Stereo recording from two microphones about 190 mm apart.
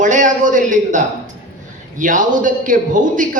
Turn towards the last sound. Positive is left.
turn(degrees=-45)  # may be behind; listen again after turning